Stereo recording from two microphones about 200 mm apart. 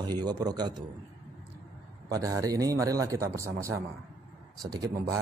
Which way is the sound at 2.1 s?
15° right (ahead or behind).